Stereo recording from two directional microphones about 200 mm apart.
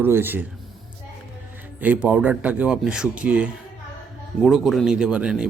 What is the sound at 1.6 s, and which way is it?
Speech, 10° right (ahead or behind).